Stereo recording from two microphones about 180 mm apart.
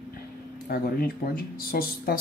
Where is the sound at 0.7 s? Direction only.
60° left (ahead or behind).